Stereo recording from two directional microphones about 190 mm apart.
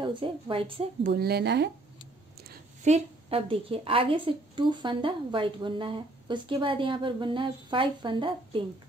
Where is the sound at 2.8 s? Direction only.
30° right (ahead or behind).